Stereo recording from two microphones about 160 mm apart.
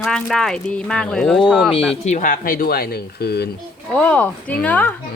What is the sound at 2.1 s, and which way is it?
Speech, 55° left (ahead or behind).